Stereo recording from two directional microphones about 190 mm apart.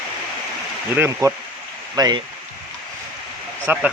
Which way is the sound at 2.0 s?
20° right (ahead or behind).